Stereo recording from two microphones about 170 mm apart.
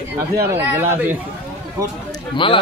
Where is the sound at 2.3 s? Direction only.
30° left (ahead or behind).